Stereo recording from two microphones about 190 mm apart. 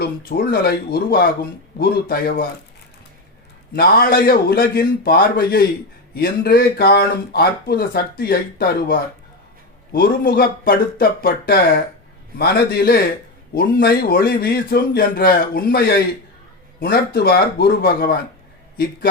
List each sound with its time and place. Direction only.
0.0 s speech: 55° left (ahead or behind)
3.8 s speech: 55° left (ahead or behind)